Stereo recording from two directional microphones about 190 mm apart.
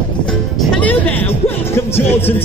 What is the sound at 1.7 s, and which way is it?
Speech, 10° left (ahead or behind).